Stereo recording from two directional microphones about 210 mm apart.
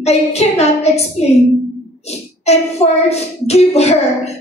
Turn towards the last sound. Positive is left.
turn(degrees=30)  # may be behind; listen again after turning